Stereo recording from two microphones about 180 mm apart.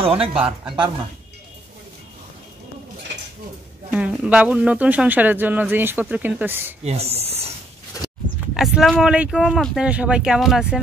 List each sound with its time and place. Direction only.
0.0 s speech: 30° right (ahead or behind)
0.3 s speech: 5° right (ahead or behind)
3.9 s speech: 5° right (ahead or behind)
6.8 s speech: 35° right (ahead or behind)
8.5 s speech: centre (ahead or behind)